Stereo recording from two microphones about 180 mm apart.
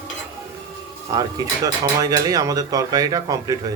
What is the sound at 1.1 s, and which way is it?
Speech, 20° right (ahead or behind).